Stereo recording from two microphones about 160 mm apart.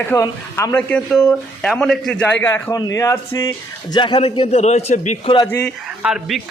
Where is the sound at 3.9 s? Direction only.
30° left (ahead or behind).